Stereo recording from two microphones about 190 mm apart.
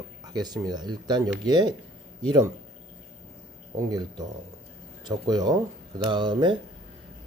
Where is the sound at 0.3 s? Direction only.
20° right (ahead or behind).